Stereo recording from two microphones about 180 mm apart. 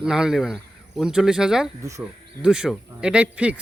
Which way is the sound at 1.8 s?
15° right (ahead or behind).